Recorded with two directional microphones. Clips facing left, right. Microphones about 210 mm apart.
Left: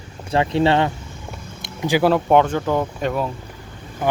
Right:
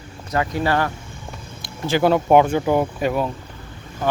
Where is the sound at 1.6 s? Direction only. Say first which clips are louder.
Left 2 dB; 15° left (ahead or behind).